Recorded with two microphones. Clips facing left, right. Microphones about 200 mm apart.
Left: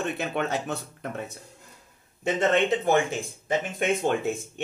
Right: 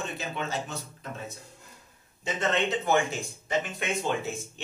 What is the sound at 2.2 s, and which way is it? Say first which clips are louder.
Speech: left 5 dB; 50° left (ahead or behind).